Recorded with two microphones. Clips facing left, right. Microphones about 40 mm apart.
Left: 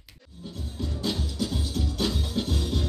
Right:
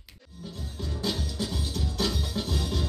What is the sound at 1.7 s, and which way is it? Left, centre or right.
Music, left.